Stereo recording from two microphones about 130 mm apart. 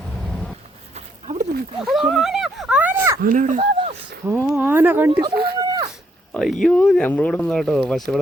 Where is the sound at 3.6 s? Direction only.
45° right (ahead or behind).